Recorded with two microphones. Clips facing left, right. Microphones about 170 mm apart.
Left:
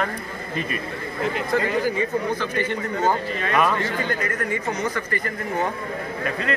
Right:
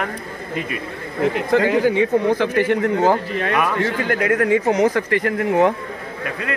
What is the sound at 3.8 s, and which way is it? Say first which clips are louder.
A man's voice: right 5 dB; 90° right.